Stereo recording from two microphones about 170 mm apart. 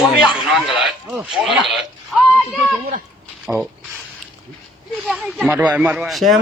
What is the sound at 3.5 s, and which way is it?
Speech, 5° right (ahead or behind).